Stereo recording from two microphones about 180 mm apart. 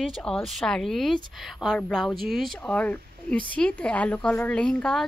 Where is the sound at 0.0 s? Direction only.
Centre (ahead or behind).